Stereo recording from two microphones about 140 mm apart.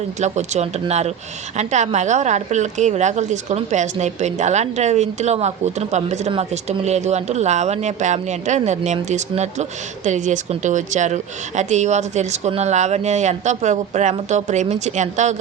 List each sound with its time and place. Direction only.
0.2 s speech: 55° right (ahead or behind)